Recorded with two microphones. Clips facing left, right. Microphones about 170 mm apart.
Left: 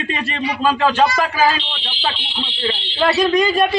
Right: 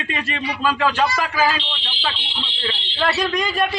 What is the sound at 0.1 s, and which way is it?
A man's voice, 30° left (ahead or behind).